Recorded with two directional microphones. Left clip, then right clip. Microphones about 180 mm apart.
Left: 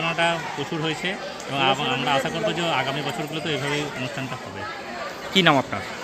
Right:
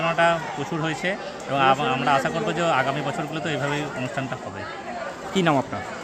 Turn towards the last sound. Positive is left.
turn(degrees=0)  # may be behind; listen again after turning